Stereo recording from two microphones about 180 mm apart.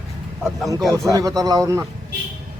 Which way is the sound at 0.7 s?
20° right (ahead or behind).